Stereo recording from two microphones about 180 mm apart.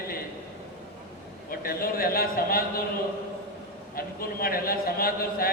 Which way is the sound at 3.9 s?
55° left (ahead or behind).